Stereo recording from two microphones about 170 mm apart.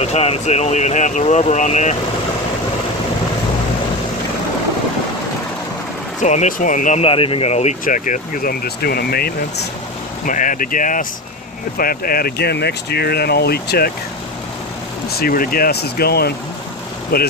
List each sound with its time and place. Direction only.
0.0 s speech: 40° left (ahead or behind)
6.2 s speech: 45° left (ahead or behind); by 9.7 s 65° left (ahead or behind)
10.2 s speech: 50° left (ahead or behind); by 13.9 s 65° left (ahead or behind)
15.0 s speech: 65° left (ahead or behind)